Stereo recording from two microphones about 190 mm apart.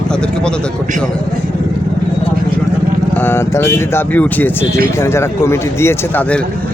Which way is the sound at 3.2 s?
10° left (ahead or behind).